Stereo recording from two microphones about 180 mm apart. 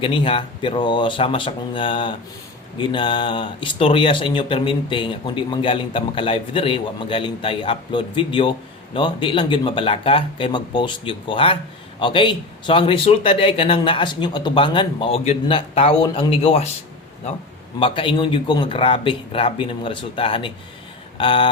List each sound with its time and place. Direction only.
0.0 s speech: 30° left (ahead or behind)
17.7 s speech: 30° left (ahead or behind)